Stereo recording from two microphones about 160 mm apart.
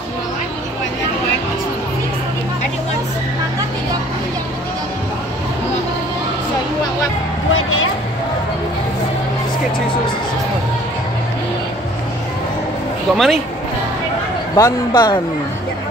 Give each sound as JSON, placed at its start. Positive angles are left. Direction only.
{"t": 13.1, "sound": "speech", "side_deg": 0}
{"t": 14.5, "sound": "a man's voice", "side_deg": 25}